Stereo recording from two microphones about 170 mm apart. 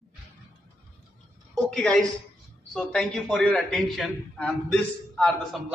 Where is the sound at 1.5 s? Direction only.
5° left (ahead or behind).